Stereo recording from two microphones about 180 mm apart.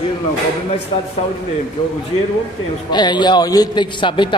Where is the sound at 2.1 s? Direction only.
35° left (ahead or behind).